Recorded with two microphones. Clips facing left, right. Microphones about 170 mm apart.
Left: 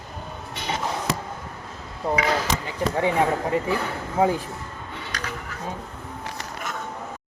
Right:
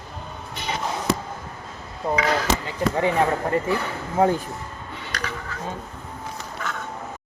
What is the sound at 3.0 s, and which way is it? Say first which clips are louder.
Speech: even; 5° left (ahead or behind).